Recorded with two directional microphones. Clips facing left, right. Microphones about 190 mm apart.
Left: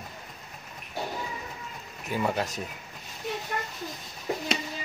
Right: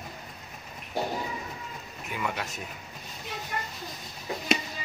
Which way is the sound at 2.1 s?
35° left (ahead or behind).